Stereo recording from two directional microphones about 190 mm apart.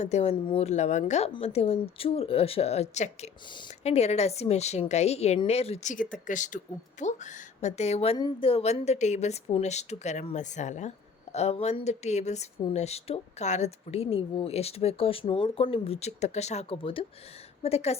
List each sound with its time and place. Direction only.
0.0 s a woman's voice: 35° left (ahead or behind)